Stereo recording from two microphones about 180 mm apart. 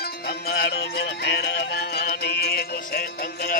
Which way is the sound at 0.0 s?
60° left (ahead or behind).